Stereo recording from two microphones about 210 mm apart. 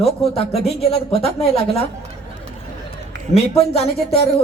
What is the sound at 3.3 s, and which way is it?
Speech, 30° left (ahead or behind).